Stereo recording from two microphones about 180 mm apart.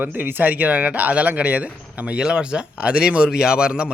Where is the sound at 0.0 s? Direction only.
10° right (ahead or behind).